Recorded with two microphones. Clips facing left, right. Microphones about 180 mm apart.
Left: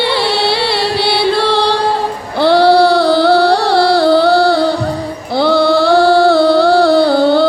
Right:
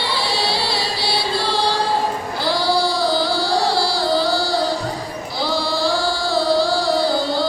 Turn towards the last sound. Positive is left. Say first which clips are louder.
# left 10 dB
turn(degrees=65)  # may be behind; listen again after turning